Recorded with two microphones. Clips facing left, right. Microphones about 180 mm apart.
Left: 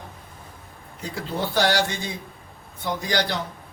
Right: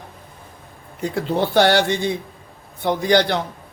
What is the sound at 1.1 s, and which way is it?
Speech, 60° right (ahead or behind).